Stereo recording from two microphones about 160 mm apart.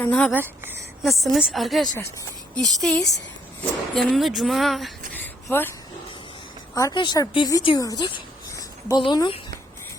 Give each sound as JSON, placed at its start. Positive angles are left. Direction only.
{"t": 0.0, "sound": "speech", "side_deg": 10}
{"t": 0.3, "sound": "speech", "side_deg": -10}
{"t": 1.0, "sound": "speech", "side_deg": 0}
{"t": 5.1, "sound": "a sound", "side_deg": 15}
{"t": 6.7, "sound": "speech", "side_deg": 25}